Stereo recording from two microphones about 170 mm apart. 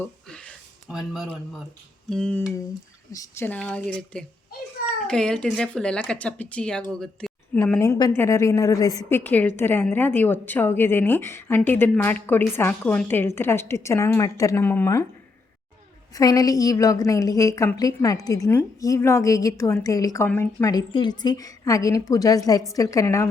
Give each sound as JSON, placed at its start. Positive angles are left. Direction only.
{"t": 0.0, "sound": "a sound", "side_deg": 5}
{"t": 2.0, "sound": "a woman's voice", "side_deg": 5}
{"t": 7.6, "sound": "a woman's voice", "side_deg": 15}
{"t": 16.1, "sound": "a woman's voice", "side_deg": 20}